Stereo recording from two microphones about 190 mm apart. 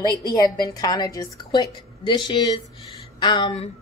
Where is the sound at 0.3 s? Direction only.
20° left (ahead or behind).